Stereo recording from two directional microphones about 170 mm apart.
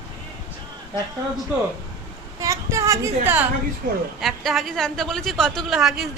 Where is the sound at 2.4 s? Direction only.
20° right (ahead or behind).